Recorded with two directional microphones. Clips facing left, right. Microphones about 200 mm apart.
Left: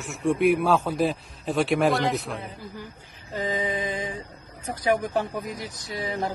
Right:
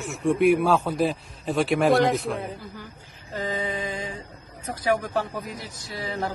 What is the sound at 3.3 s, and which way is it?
Mantra, 15° left (ahead or behind).